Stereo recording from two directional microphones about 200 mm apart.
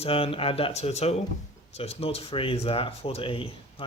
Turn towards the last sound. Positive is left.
turn(degrees=25)  # may be behind; listen again after turning